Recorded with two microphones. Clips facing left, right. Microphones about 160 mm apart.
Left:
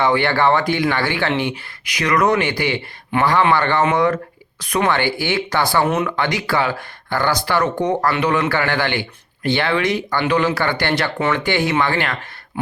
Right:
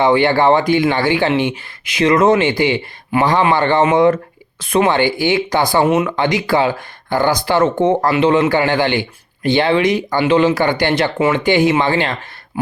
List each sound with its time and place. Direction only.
0.0 s a man's voice: 20° right (ahead or behind)